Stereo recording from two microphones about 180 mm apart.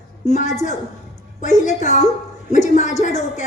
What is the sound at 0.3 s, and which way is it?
A woman's voice, 40° left (ahead or behind).